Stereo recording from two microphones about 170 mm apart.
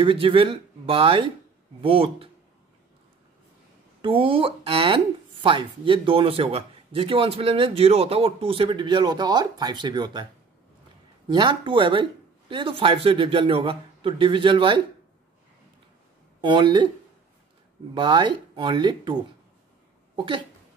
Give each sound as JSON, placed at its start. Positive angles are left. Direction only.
{"t": 0.0, "sound": "speech", "side_deg": -30}
{"t": 4.0, "sound": "speech", "side_deg": -30}
{"t": 11.2, "sound": "speech", "side_deg": -25}
{"t": 16.3, "sound": "speech", "side_deg": -25}
{"t": 17.9, "sound": "speech", "side_deg": -25}
{"t": 20.2, "sound": "speech", "side_deg": -30}